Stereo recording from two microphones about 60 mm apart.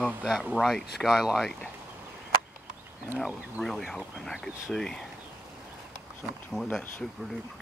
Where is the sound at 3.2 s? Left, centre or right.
Centre.